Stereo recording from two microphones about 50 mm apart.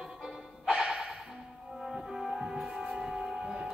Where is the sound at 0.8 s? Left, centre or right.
Centre.